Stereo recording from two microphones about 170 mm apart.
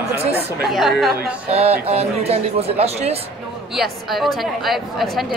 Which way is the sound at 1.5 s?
40° right (ahead or behind).